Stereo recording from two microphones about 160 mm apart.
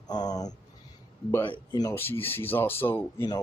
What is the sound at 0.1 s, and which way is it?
Speech, 25° left (ahead or behind).